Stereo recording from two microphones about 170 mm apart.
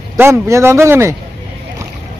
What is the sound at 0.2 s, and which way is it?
Speech, 15° right (ahead or behind).